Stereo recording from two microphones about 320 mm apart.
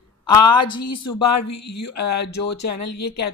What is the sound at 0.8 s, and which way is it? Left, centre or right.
Speech, left.